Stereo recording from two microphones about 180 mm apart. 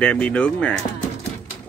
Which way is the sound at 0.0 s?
5° left (ahead or behind).